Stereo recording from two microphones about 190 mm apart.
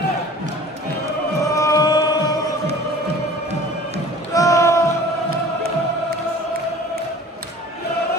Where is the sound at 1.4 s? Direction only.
15° left (ahead or behind).